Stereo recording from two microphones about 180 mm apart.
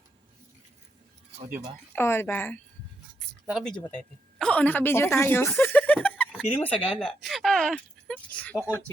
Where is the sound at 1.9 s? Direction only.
15° left (ahead or behind).